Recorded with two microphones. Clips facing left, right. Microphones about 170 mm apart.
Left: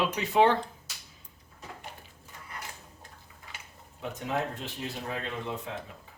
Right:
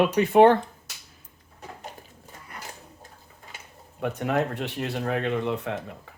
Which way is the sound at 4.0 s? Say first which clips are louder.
Right 7 dB; 60° right (ahead or behind).